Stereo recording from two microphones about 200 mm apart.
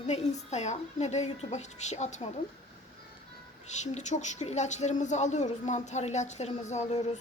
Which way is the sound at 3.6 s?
35° left (ahead or behind).